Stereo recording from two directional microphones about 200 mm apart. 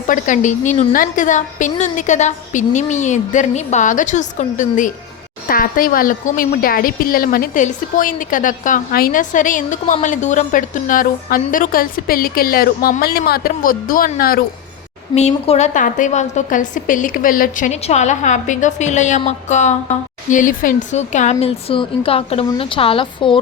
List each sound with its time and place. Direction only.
0.1 s a woman's voice: 40° left (ahead or behind)
15.1 s a woman's voice: 35° left (ahead or behind)